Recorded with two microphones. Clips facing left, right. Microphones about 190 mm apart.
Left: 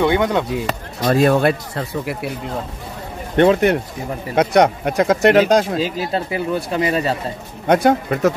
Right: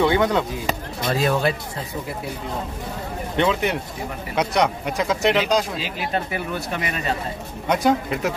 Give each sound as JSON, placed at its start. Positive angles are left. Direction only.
{"t": 0.0, "sound": "speech", "side_deg": 20}
{"t": 1.0, "sound": "speech", "side_deg": 55}
{"t": 3.3, "sound": "speech", "side_deg": 50}
{"t": 5.9, "sound": "speech", "side_deg": 30}
{"t": 7.6, "sound": "speech", "side_deg": 55}